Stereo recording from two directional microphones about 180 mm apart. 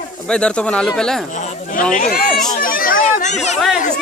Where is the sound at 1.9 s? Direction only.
55° left (ahead or behind).